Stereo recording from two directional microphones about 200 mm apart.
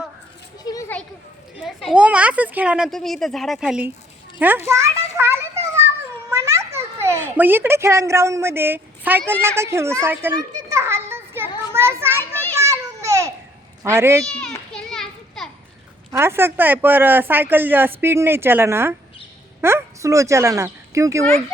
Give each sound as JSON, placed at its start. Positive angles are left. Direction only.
{"t": 0.6, "sound": "children playing", "side_deg": 15}
{"t": 1.9, "sound": "a child's voice", "side_deg": -5}
{"t": 5.6, "sound": "a sound", "side_deg": -15}
{"t": 6.4, "sound": "a child's voice", "side_deg": -15}
{"t": 9.6, "sound": "children playing", "side_deg": -15}
{"t": 12.5, "sound": "babbling", "side_deg": -15}
{"t": 13.8, "sound": "speech", "side_deg": -10}
{"t": 14.3, "sound": "children playing", "side_deg": 5}
{"t": 16.1, "sound": "speech", "side_deg": -10}